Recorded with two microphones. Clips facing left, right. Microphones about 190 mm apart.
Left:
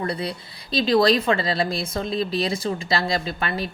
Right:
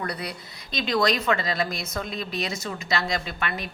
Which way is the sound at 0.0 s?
25° left (ahead or behind).